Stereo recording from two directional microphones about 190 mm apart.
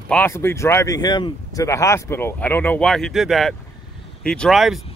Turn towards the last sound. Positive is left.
turn(degrees=0)  # may be behind; listen again after turning